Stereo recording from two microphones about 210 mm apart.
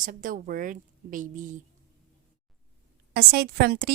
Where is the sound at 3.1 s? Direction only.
45° right (ahead or behind).